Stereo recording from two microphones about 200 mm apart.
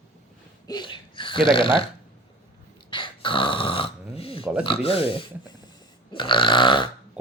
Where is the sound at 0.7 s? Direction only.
25° left (ahead or behind).